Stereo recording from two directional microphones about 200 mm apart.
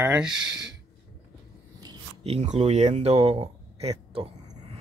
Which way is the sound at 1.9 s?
30° right (ahead or behind).